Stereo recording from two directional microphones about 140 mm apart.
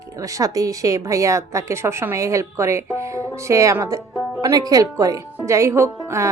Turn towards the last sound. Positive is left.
turn(degrees=-20)  # may be behind; listen again after turning